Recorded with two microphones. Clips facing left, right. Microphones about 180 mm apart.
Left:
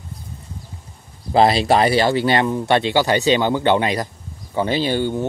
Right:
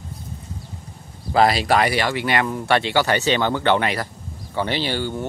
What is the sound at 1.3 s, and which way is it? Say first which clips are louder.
A man's voice: left 3 dB; 25° left (ahead or behind).